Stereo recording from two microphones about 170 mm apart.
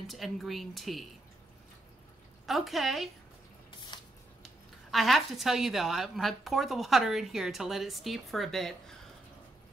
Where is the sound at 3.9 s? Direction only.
25° left (ahead or behind).